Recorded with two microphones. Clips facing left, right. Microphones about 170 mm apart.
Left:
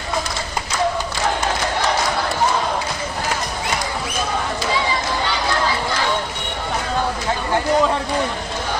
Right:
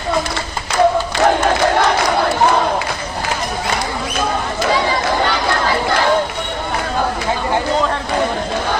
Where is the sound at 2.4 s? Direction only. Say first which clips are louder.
Right 5 dB; 65° right (ahead or behind).